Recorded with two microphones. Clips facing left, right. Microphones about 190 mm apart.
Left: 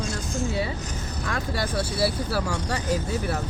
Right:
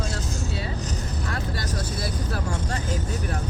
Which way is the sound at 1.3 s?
40° right (ahead or behind).